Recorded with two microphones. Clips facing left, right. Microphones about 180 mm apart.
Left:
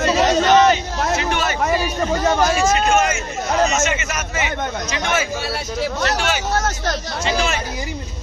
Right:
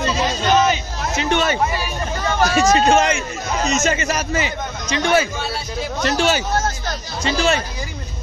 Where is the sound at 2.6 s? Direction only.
35° right (ahead or behind).